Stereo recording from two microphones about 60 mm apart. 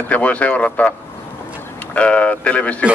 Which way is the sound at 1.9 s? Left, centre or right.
Left.